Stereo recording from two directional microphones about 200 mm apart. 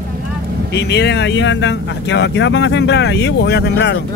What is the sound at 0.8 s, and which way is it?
Speech, 60° left (ahead or behind).